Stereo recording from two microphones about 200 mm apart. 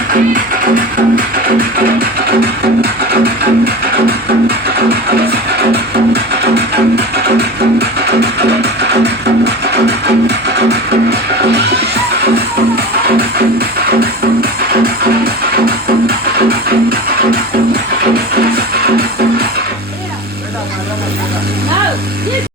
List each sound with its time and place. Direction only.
0.1 s music: 40° right (ahead or behind)
3.1 s music: 50° right (ahead or behind)